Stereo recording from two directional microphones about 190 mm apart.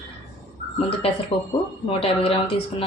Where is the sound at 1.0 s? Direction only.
30° left (ahead or behind).